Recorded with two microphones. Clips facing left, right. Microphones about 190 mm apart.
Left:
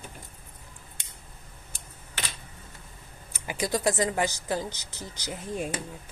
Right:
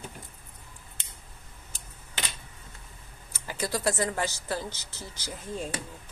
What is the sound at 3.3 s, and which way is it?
A woman's voice, 15° left (ahead or behind).